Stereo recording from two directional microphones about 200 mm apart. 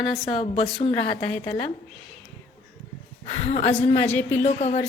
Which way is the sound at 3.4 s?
35° left (ahead or behind).